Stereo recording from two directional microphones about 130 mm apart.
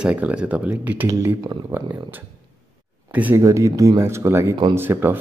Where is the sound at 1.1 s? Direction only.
25° right (ahead or behind).